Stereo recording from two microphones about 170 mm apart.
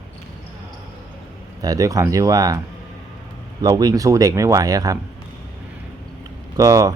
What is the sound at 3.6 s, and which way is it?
Speech, 25° right (ahead or behind).